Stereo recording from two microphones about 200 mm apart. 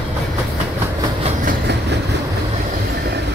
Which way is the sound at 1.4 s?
55° right (ahead or behind).